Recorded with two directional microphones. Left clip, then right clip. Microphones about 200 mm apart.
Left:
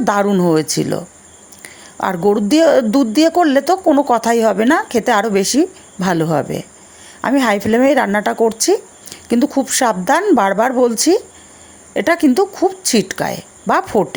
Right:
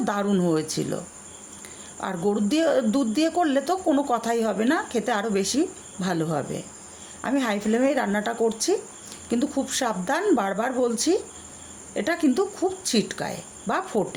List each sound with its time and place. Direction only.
0.0 s a woman's voice: 40° left (ahead or behind)